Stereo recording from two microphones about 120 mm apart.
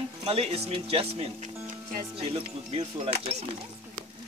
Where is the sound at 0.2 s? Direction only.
55° right (ahead or behind).